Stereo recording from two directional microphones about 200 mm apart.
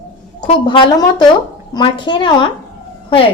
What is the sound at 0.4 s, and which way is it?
A woman's voice, 25° left (ahead or behind).